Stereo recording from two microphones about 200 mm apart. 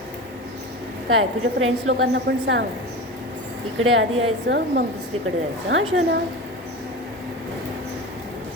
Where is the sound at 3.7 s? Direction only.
80° right.